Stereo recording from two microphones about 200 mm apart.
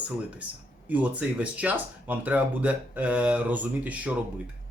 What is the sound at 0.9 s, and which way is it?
Speech, 5° right (ahead or behind).